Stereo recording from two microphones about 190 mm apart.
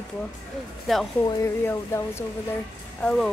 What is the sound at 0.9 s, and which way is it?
Speech, centre (ahead or behind).